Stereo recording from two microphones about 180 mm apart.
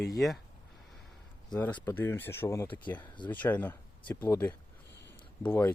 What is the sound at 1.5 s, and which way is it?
Speech, 5° left (ahead or behind).